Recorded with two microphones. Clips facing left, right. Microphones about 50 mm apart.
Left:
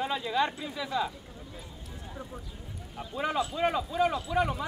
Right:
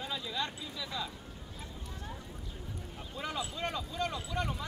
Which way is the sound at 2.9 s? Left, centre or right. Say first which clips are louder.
Left 9 dB; left.